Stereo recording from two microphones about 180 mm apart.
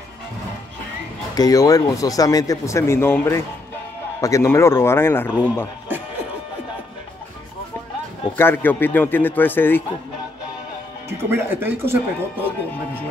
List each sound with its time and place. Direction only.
1.3 s a man's voice: 20° left (ahead or behind)
8.4 s a man's voice: 10° left (ahead or behind)
11.1 s speech: 15° right (ahead or behind)